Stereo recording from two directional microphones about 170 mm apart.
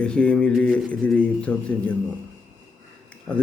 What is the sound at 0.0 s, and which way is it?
Speech, 5° left (ahead or behind).